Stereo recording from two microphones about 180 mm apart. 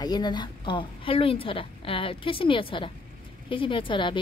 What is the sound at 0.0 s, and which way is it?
A woman's voice, 25° left (ahead or behind).